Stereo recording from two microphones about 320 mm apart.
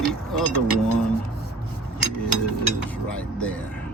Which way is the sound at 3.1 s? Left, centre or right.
Centre.